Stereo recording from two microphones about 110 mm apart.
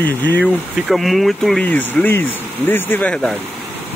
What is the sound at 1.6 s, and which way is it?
Speech, 15° left (ahead or behind).